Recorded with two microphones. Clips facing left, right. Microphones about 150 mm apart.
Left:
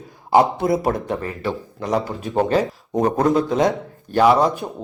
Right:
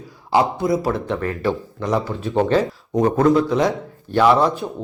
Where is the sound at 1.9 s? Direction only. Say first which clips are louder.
Right 1 dB; 15° left (ahead or behind).